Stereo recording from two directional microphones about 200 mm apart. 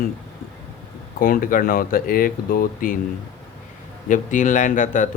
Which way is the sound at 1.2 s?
45° left (ahead or behind).